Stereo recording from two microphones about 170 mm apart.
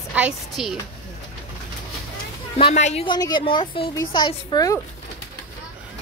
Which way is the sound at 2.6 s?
40° left (ahead or behind).